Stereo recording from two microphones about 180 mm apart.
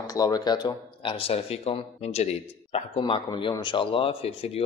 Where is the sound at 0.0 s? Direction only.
20° left (ahead or behind).